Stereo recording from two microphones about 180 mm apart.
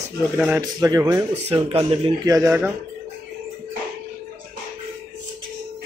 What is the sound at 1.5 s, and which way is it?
Speech, 30° right (ahead or behind).